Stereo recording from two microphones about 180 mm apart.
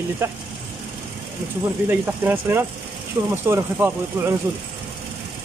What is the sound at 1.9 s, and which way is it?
Speech, 10° right (ahead or behind).